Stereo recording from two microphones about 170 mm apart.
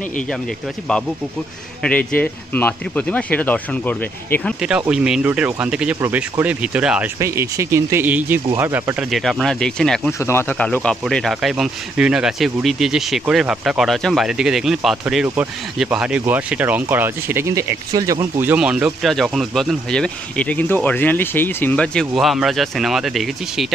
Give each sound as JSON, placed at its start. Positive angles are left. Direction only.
{"t": 1.8, "sound": "speech", "side_deg": 10}
{"t": 4.6, "sound": "speech", "side_deg": -5}
{"t": 7.2, "sound": "speech", "side_deg": -15}
{"t": 9.1, "sound": "speech", "side_deg": 0}